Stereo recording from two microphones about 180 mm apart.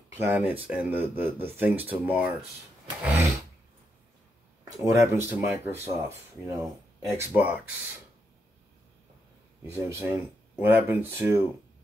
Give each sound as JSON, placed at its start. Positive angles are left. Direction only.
{"t": 0.1, "sound": "speech", "side_deg": -10}
{"t": 3.0, "sound": "a sound", "side_deg": -15}
{"t": 4.6, "sound": "speech", "side_deg": -15}
{"t": 9.6, "sound": "speech", "side_deg": -15}